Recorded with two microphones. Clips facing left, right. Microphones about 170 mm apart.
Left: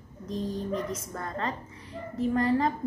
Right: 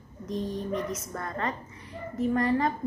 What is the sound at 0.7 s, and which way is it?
Speech, 30° left (ahead or behind).